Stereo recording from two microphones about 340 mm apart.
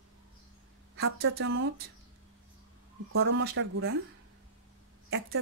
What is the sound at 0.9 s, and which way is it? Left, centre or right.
Speech, right.